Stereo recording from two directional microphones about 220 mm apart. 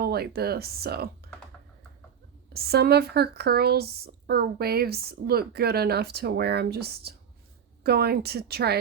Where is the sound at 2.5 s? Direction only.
45° right (ahead or behind).